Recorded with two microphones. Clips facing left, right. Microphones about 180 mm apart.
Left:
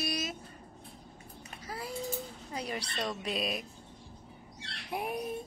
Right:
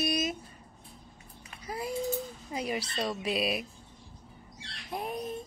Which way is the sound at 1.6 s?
15° right (ahead or behind).